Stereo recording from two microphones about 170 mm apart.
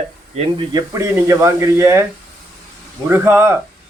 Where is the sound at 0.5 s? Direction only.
20° right (ahead or behind).